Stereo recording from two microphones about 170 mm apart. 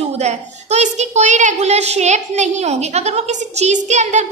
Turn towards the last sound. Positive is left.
turn(degrees=-45)  # may be behind; listen again after turning